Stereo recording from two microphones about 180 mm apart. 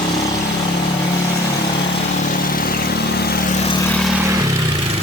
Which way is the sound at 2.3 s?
50° left (ahead or behind).